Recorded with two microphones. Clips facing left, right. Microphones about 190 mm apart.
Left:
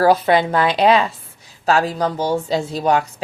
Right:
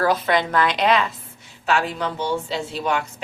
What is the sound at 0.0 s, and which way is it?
A woman's voice, 30° left (ahead or behind).